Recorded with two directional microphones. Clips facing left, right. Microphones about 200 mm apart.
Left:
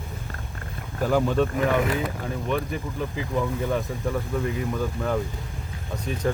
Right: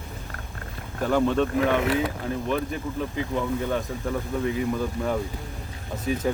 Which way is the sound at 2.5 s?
Centre (ahead or behind).